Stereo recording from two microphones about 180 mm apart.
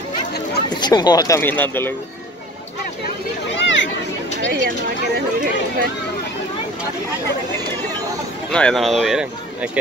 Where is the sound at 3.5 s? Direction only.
90° left.